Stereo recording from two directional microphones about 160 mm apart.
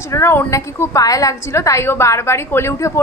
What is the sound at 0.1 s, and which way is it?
A woman's voice, 15° left (ahead or behind).